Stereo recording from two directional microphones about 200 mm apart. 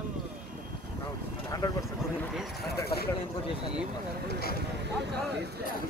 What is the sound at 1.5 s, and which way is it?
Speech, 20° left (ahead or behind).